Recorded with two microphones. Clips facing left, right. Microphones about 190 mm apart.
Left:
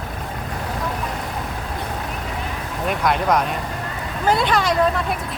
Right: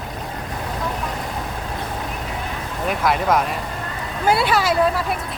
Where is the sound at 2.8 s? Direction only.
Centre (ahead or behind).